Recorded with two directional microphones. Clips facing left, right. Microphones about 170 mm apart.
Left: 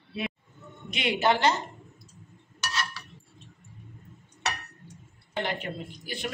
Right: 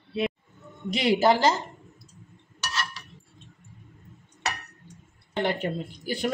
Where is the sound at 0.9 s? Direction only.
35° right (ahead or behind).